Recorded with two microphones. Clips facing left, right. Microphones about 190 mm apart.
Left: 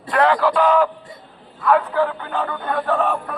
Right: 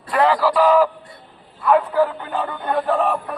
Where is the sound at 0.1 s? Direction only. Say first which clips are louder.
Even; centre (ahead or behind).